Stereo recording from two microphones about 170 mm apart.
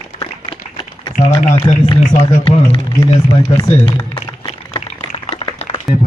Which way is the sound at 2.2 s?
35° left (ahead or behind).